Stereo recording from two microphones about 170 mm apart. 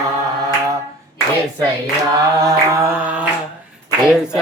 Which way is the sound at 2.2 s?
20° right (ahead or behind).